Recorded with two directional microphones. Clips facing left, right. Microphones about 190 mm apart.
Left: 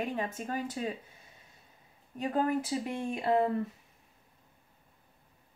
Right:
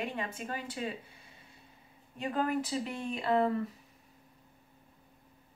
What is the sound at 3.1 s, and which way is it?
Speech, 20° left (ahead or behind).